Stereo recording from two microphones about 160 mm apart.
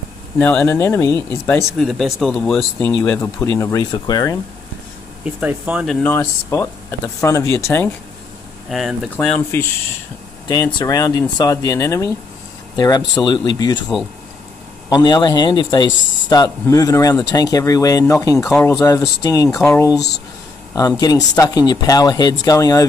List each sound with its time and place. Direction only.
0.4 s speech: 10° left (ahead or behind)
1.8 s speech: centre (ahead or behind); by 4.4 s 20° left (ahead or behind)
5.2 s speech: 10° right (ahead or behind)
6.0 s speech: 15° left (ahead or behind)
8.6 s speech: centre (ahead or behind)
9.5 s speech: 15° left (ahead or behind)
10.5 s speech: 25° left (ahead or behind)
14.9 s speech: 25° left (ahead or behind)
21.0 s speech: 25° left (ahead or behind)